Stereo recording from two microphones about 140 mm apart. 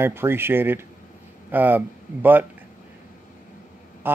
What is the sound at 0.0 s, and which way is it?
Speech, 15° right (ahead or behind).